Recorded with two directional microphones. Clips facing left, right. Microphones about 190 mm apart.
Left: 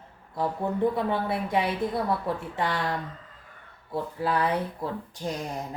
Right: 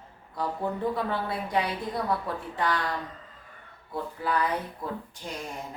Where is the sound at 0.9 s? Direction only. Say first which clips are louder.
Left 3 dB; 25° left (ahead or behind).